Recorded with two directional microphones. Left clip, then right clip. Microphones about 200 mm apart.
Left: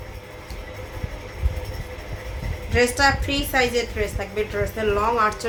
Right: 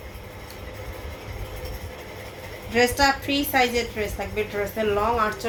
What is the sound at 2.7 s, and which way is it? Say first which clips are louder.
A woman's voice: left 1 dB; 10° left (ahead or behind).